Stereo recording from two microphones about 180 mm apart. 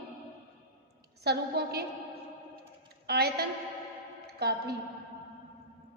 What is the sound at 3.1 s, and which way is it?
A woman's voice, 60° right (ahead or behind).